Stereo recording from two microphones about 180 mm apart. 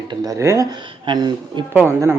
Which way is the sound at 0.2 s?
20° right (ahead or behind).